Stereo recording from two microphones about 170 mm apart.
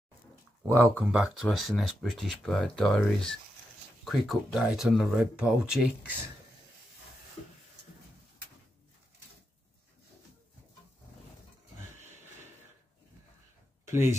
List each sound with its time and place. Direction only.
0.7 s speech: 15° right (ahead or behind)
13.8 s speech: 15° right (ahead or behind)